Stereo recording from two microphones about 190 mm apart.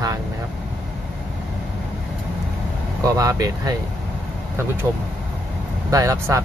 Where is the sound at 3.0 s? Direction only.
20° right (ahead or behind).